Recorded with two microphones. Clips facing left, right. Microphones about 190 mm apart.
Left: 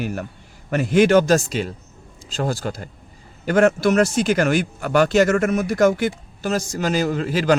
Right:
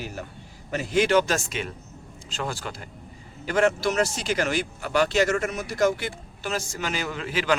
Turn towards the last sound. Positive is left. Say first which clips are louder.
# left 8 dB
turn(degrees=40)  # may be behind; listen again after turning